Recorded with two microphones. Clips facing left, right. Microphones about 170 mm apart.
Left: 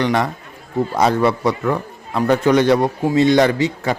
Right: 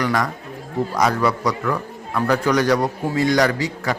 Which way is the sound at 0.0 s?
25° left (ahead or behind).